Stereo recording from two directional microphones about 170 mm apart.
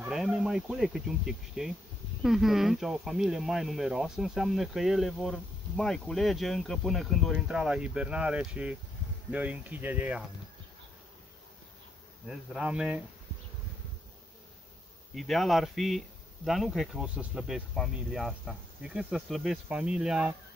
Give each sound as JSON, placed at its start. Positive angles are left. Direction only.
{"t": 0.0, "sound": "speech", "side_deg": -5}
{"t": 12.3, "sound": "speech", "side_deg": -5}
{"t": 15.1, "sound": "speech", "side_deg": 0}